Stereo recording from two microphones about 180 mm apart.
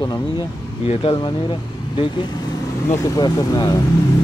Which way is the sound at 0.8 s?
30° left (ahead or behind).